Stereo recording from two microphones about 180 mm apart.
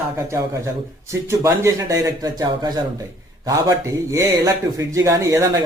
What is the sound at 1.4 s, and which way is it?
Speech, 15° right (ahead or behind).